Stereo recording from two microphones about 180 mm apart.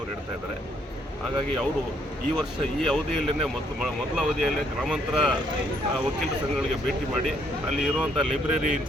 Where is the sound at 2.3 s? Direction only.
Centre (ahead or behind).